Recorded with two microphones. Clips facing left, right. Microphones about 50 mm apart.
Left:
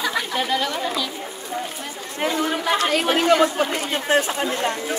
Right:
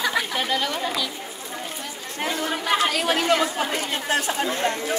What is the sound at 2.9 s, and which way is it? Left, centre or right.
Speech, left.